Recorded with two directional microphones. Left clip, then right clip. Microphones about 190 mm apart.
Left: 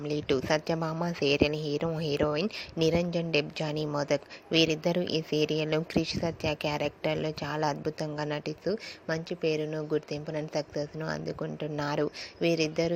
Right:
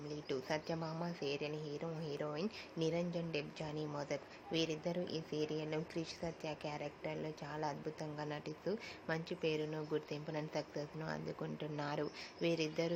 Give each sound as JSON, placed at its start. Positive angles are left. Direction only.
{"t": 0.1, "sound": "a woman's voice", "side_deg": 40}